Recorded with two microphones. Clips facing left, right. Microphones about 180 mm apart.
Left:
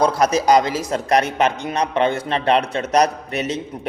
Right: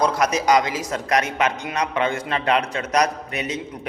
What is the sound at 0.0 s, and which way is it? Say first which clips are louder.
A man's voice: left 3 dB; 30° left (ahead or behind).